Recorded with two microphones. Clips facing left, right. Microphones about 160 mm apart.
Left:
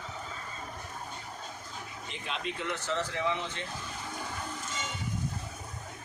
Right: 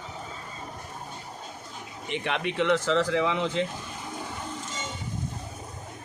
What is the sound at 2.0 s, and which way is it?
Speech, 75° right (ahead or behind).